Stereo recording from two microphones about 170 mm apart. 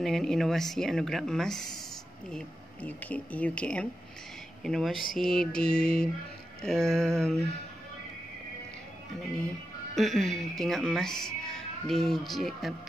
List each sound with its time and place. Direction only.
0.0 s speech: centre (ahead or behind)
9.9 s speech: centre (ahead or behind)